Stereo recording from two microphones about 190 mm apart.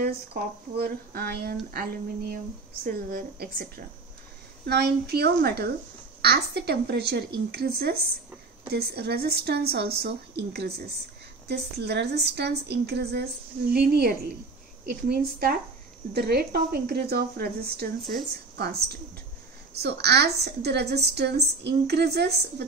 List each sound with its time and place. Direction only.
0.0 s a woman's voice: 50° right (ahead or behind)